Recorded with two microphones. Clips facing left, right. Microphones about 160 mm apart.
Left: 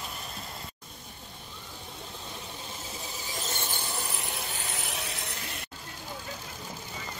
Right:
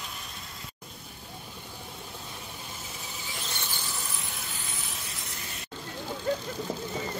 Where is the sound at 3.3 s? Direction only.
45° left (ahead or behind).